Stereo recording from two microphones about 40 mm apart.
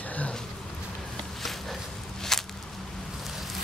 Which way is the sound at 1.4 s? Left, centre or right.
Centre.